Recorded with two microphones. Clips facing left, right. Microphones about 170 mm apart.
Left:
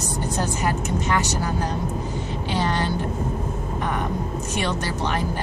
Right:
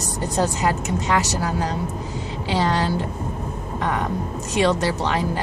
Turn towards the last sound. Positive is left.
turn(degrees=-90)